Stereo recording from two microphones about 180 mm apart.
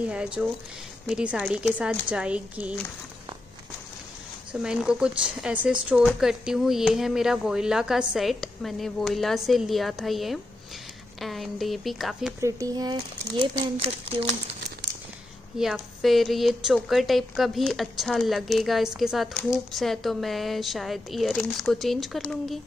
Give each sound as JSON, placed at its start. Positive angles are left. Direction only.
{"t": 0.0, "sound": "a woman's voice", "side_deg": -5}
{"t": 4.5, "sound": "a woman's voice", "side_deg": -5}
{"t": 12.4, "sound": "speech", "side_deg": -20}
{"t": 13.6, "sound": "speech", "side_deg": -35}
{"t": 15.6, "sound": "a woman's voice", "side_deg": 0}